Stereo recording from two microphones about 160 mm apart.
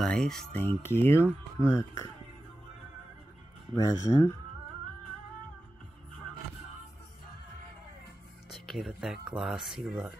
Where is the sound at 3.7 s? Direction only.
20° left (ahead or behind).